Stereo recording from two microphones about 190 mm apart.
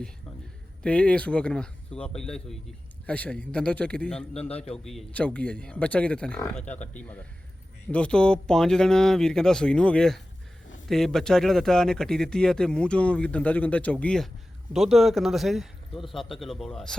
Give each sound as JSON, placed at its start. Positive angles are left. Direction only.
{"t": 0.8, "sound": "speech", "side_deg": 5}
{"t": 4.4, "sound": "a man's voice", "side_deg": 30}
{"t": 4.7, "sound": "speech", "side_deg": 0}